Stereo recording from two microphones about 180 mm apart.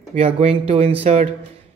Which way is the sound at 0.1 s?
35° right (ahead or behind).